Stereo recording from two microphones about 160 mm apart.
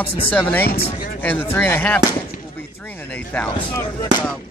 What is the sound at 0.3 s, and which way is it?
Speech, 10° left (ahead or behind).